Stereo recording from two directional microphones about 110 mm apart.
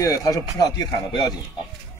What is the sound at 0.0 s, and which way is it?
Speech, 30° left (ahead or behind).